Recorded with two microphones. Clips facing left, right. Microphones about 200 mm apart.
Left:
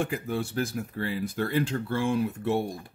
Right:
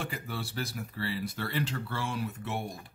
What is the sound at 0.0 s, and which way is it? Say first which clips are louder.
Speech: left 8 dB; 50° left (ahead or behind).